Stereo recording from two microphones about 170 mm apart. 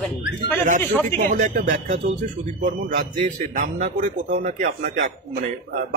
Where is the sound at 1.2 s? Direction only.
50° right (ahead or behind).